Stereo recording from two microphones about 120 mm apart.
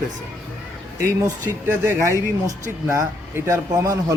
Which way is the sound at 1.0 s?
25° right (ahead or behind).